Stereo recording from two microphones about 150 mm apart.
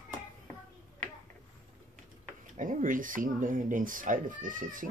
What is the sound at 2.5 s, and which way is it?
Speech, 60° right (ahead or behind).